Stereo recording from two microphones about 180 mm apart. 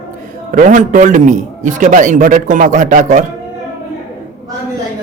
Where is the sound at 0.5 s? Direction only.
45° right (ahead or behind).